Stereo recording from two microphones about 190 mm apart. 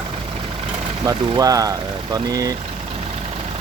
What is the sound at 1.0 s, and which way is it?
Speech, 20° right (ahead or behind).